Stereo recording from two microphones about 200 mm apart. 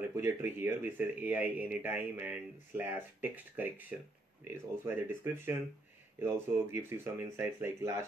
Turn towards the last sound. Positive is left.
turn(degrees=-10)  # may be behind; listen again after turning